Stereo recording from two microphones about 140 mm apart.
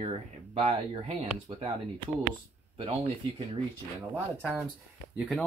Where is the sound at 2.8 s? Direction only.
45° right (ahead or behind).